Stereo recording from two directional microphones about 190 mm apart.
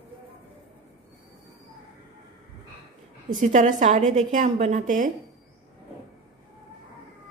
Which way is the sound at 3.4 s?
40° right (ahead or behind).